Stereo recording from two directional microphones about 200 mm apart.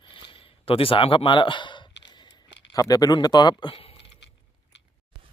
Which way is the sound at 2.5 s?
60° left (ahead or behind).